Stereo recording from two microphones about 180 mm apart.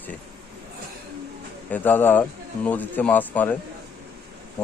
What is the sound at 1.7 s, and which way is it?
Speech, 10° left (ahead or behind).